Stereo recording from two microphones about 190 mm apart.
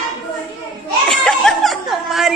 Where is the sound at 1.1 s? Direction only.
Centre (ahead or behind).